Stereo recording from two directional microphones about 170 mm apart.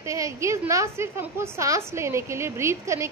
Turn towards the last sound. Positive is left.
turn(degrees=-15)  # may be behind; listen again after turning